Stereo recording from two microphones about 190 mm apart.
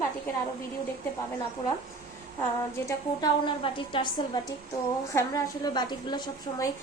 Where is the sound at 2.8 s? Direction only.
25° left (ahead or behind).